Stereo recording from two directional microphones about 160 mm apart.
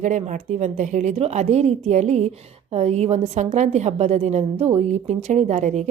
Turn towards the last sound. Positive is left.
turn(degrees=-50)  # may be behind; listen again after turning